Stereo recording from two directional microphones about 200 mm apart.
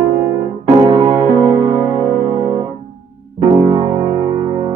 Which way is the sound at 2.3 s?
20° right (ahead or behind).